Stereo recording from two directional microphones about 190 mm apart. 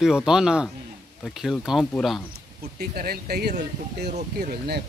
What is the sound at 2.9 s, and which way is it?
Speech, 55° right (ahead or behind).